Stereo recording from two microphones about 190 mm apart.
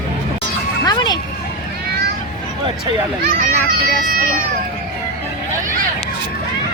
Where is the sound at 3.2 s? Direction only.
50° right (ahead or behind).